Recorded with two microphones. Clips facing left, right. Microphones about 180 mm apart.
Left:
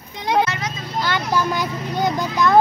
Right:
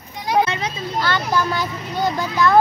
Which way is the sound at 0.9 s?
15° left (ahead or behind).